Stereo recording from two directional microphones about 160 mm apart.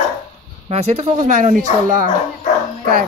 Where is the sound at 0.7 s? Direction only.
40° right (ahead or behind).